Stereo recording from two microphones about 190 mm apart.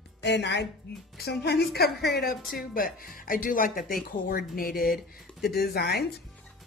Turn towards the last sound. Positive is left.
turn(degrees=55)  # may be behind; listen again after turning